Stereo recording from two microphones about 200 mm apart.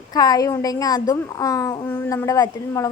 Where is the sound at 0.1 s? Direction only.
20° left (ahead or behind).